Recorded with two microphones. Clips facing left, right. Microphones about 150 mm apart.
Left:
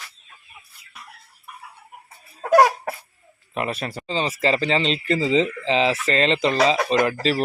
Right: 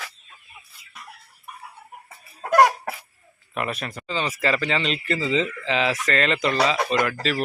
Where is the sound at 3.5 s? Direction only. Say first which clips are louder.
Left 2 dB; 30° left (ahead or behind).